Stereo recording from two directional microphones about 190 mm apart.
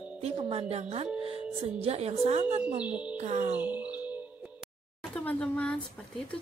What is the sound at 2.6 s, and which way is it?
Speech, 5° right (ahead or behind).